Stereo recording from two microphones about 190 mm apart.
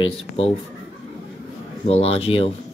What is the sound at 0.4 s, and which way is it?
Speech, 30° left (ahead or behind).